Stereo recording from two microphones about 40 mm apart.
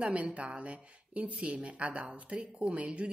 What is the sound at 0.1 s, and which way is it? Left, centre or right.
Speech, right.